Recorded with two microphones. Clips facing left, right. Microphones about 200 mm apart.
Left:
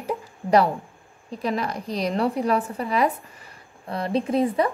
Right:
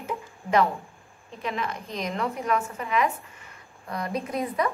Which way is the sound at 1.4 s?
40° left (ahead or behind).